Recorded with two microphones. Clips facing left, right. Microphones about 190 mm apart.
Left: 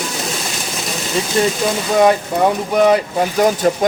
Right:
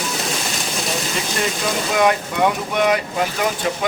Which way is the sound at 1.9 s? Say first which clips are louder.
Left 5 dB; 35° left (ahead or behind).